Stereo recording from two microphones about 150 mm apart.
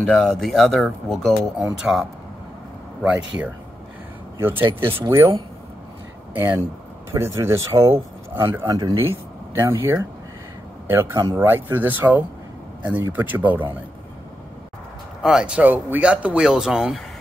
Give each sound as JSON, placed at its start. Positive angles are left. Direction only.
{"t": 0.0, "sound": "speech", "side_deg": 5}
{"t": 6.3, "sound": "speech", "side_deg": -15}
{"t": 15.2, "sound": "speech", "side_deg": -5}